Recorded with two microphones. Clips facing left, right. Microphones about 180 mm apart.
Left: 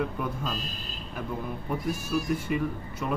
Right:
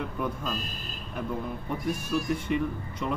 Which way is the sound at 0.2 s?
Centre (ahead or behind).